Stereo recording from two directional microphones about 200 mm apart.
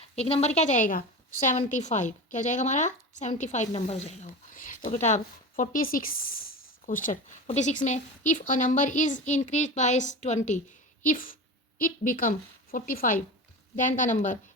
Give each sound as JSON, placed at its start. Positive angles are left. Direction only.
{"t": 0.0, "sound": "a woman's voice", "side_deg": 30}